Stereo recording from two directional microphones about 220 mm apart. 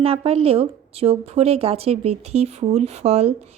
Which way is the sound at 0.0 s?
25° right (ahead or behind).